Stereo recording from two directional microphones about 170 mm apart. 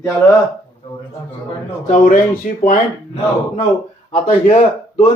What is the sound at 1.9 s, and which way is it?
Speech, 55° left (ahead or behind).